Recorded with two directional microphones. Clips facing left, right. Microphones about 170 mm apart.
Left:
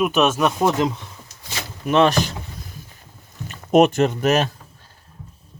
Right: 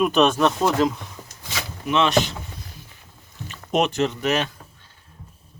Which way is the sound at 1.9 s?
45° left (ahead or behind).